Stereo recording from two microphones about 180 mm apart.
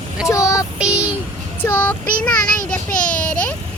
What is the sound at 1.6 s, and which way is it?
Child singing, 10° left (ahead or behind).